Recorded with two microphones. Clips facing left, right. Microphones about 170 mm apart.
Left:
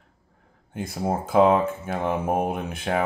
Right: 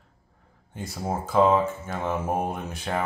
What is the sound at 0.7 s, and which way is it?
Speech, 55° left (ahead or behind).